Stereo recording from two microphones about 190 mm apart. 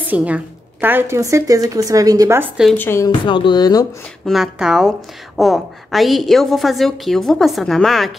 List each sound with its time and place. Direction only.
0.0 s speech: 10° right (ahead or behind)
2.8 s a woman's voice: 15° left (ahead or behind)
3.1 s speech: 25° left (ahead or behind)
4.3 s a woman's voice: centre (ahead or behind)